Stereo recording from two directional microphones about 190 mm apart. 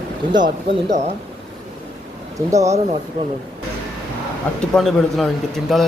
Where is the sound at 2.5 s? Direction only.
15° right (ahead or behind).